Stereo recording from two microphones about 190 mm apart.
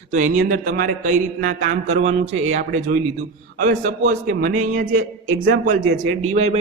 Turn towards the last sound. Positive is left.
turn(degrees=-35)  # may be behind; listen again after turning